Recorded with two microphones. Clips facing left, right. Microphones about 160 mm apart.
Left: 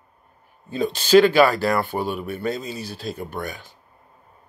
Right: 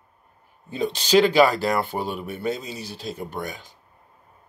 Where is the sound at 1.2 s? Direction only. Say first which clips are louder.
Left 1 dB; 20° right (ahead or behind).